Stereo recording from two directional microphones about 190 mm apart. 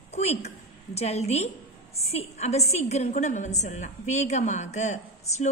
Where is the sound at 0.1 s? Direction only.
35° left (ahead or behind).